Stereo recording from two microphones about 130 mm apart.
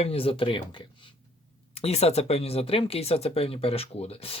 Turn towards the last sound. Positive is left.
turn(degrees=50)  # may be behind; listen again after turning